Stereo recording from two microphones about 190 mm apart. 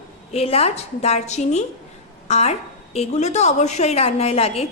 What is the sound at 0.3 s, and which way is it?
A woman's voice, 35° left (ahead or behind).